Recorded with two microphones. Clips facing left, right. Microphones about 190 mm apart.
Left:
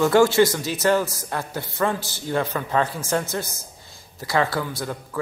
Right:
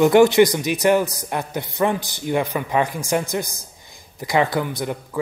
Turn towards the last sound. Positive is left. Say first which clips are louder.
# right 3 dB
turn(degrees=-20)  # may be behind; listen again after turning